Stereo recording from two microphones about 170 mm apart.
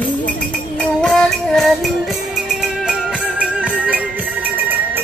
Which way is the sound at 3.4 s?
5° right (ahead or behind).